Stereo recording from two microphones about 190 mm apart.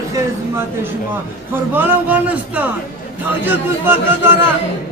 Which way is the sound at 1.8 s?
10° right (ahead or behind).